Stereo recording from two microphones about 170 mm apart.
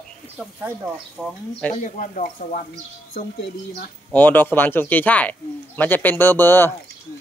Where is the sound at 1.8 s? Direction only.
50° left (ahead or behind).